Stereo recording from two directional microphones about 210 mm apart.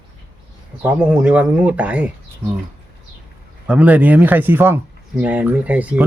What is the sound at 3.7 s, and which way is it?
Speech, 5° right (ahead or behind).